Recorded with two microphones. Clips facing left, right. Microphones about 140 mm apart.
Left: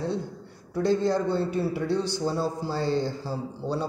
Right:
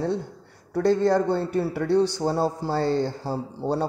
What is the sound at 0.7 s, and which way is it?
A man's voice, 65° right (ahead or behind).